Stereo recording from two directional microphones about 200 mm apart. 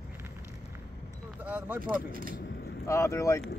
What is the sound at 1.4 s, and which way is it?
Speech, 10° right (ahead or behind).